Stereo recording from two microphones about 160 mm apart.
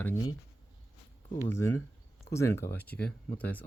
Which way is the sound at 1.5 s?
15° left (ahead or behind).